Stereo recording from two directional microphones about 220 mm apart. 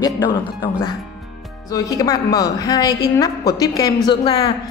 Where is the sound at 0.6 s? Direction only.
20° left (ahead or behind).